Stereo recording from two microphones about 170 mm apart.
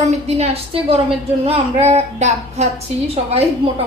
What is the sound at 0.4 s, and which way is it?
Speech, 35° right (ahead or behind).